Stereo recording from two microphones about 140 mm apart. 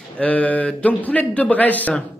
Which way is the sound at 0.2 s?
10° left (ahead or behind).